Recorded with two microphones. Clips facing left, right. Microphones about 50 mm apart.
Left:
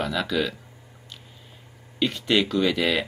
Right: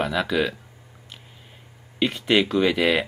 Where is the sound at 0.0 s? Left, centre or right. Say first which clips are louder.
Right 2 dB; centre.